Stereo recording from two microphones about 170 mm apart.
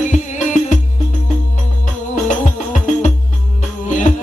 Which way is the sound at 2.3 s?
45° left (ahead or behind).